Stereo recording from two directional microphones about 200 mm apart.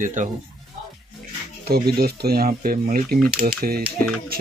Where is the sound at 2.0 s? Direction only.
50° right (ahead or behind).